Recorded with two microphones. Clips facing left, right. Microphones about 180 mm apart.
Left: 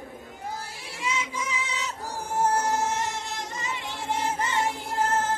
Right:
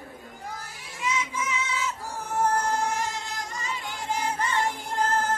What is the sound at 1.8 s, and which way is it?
Music, 35° left (ahead or behind).